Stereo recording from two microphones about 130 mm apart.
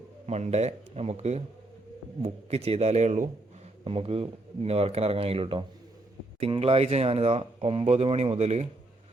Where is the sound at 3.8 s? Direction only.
50° right (ahead or behind).